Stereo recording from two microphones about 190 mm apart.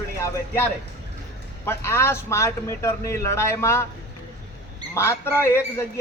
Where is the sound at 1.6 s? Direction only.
15° left (ahead or behind).